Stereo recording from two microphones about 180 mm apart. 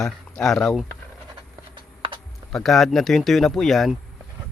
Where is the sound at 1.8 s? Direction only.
25° right (ahead or behind).